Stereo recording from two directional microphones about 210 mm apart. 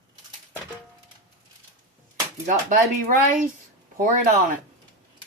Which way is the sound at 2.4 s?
35° right (ahead or behind).